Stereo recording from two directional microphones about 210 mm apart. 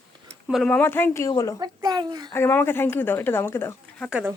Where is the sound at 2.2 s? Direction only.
10° left (ahead or behind).